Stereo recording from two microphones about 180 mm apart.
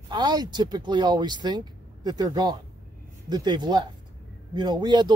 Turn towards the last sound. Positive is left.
turn(degrees=-25)  # may be behind; listen again after turning